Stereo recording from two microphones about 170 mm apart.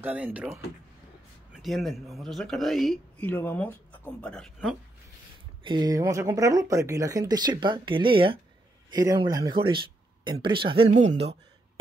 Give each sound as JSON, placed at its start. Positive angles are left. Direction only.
{"t": 0.0, "sound": "speech", "side_deg": -10}
{"t": 5.6, "sound": "speech", "side_deg": -25}
{"t": 10.9, "sound": "speech", "side_deg": -40}